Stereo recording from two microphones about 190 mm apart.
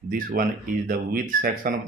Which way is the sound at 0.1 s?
45° right (ahead or behind).